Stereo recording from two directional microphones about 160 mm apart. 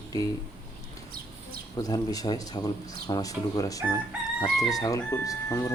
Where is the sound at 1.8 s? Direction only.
20° left (ahead or behind).